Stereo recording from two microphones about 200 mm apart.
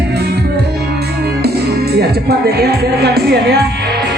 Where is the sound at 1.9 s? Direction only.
55° right (ahead or behind).